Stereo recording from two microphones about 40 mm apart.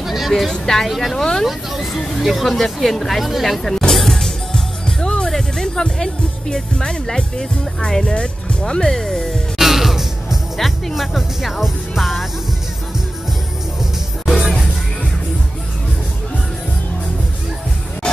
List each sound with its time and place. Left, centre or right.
0.0 s vehicle: centre
0.3 s speech: centre
1.1 s speech: centre
1.4 s speech: centre
3.9 s music: centre
5.2 s speech: centre
8.6 s speech: centre
9.6 s music: centre
10.9 s speech: centre
14.2 s music: centre
18.0 s music: left